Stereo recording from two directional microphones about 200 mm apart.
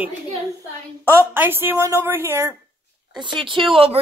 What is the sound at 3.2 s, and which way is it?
Speech, 25° right (ahead or behind).